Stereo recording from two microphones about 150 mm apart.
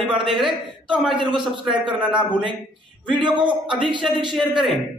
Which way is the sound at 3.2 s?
30° right (ahead or behind).